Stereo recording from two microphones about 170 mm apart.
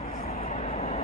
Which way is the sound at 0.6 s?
40° left (ahead or behind).